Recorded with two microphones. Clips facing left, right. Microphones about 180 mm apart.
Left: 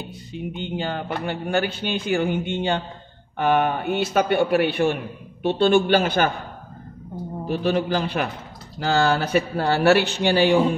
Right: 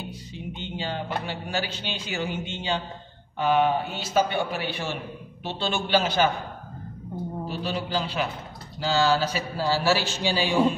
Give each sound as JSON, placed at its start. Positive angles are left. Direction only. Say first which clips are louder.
{"t": 0.3, "sound": "speech", "louder": "left 9 dB", "side_deg": 55}
{"t": 7.4, "sound": "a man's voice", "louder": "left 11 dB", "side_deg": 50}